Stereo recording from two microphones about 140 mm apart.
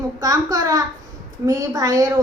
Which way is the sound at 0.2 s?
25° right (ahead or behind).